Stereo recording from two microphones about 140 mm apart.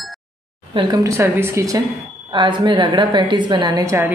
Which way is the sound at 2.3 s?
35° right (ahead or behind).